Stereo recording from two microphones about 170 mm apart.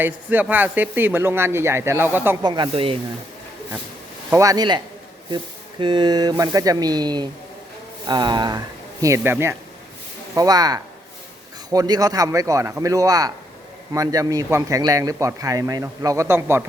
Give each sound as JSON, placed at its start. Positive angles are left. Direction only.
{"t": 0.0, "sound": "a man's voice", "side_deg": -10}
{"t": 2.4, "sound": "a man's voice", "side_deg": -25}
{"t": 4.3, "sound": "a man's voice", "side_deg": -20}
{"t": 5.8, "sound": "a man's voice", "side_deg": -25}